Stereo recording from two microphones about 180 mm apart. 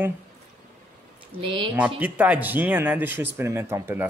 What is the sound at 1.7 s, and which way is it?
Speech, 10° right (ahead or behind).